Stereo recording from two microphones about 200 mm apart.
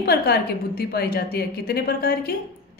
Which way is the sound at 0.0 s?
50° left (ahead or behind).